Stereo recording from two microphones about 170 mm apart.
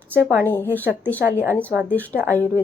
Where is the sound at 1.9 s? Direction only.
10° left (ahead or behind).